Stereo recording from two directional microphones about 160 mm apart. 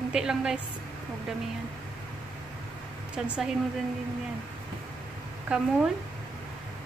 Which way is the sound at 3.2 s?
5° right (ahead or behind).